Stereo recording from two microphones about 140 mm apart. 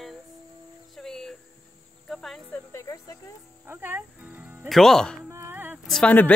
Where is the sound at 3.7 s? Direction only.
15° right (ahead or behind).